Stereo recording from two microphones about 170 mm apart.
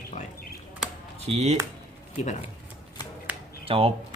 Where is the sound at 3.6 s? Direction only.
35° right (ahead or behind).